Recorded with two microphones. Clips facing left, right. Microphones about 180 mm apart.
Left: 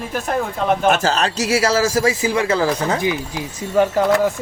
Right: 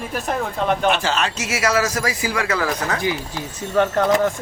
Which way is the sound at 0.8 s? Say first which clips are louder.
Left 3 dB; 40° left (ahead or behind).